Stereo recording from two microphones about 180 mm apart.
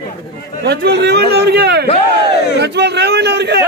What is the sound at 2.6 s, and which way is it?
A man's voice, 70° right (ahead or behind).